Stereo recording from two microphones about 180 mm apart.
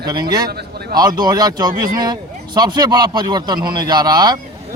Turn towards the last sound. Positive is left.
turn(degrees=-20)  # may be behind; listen again after turning